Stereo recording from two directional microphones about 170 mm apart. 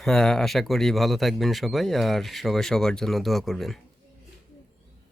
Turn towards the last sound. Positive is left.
turn(degrees=0)  # may be behind; listen again after turning